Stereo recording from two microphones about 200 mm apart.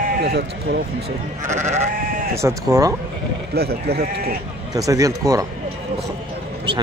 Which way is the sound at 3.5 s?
50° right (ahead or behind).